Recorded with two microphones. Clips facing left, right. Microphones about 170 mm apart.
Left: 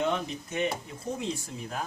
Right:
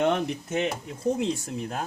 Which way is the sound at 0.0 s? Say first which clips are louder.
Right 5 dB; 65° right (ahead or behind).